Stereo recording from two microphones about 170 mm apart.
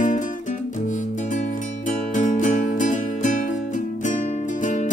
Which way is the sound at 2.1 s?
45° left (ahead or behind).